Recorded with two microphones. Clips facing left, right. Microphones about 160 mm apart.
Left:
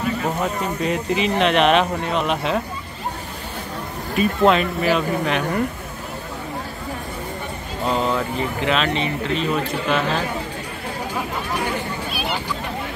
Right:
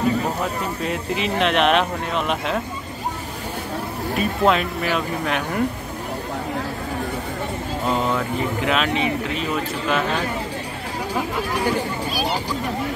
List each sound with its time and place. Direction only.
0.8 s speech: centre (ahead or behind)
4.2 s speech: centre (ahead or behind)
7.8 s speech: 5° right (ahead or behind)
12.1 s a sound: 35° right (ahead or behind)